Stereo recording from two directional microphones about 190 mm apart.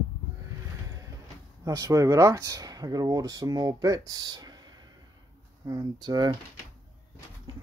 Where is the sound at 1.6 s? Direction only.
20° right (ahead or behind).